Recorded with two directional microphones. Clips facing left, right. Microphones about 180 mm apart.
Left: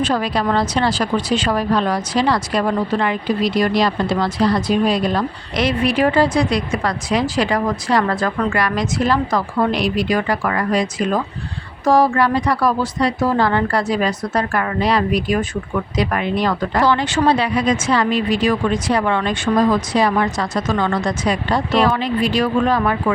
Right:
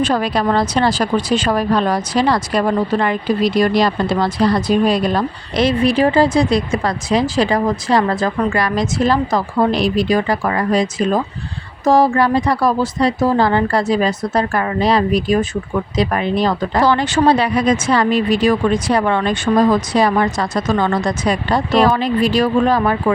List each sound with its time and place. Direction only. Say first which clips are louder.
0.0 s a woman's voice: right 2 dB; 45° right (ahead or behind)
5.5 s a woman's voice: right 3 dB; 25° right (ahead or behind)